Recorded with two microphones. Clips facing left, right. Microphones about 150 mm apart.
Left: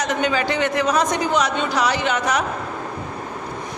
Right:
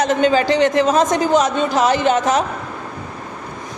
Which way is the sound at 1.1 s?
45° right (ahead or behind).